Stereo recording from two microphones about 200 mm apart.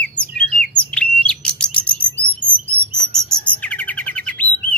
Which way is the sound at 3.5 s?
5° left (ahead or behind).